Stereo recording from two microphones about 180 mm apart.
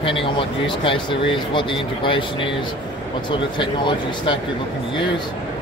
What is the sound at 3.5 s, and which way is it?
Speech, 25° left (ahead or behind).